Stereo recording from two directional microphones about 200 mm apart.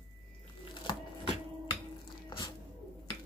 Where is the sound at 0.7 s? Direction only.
25° left (ahead or behind).